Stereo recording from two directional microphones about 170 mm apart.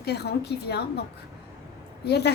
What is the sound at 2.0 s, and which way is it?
Speech, 75° left (ahead or behind).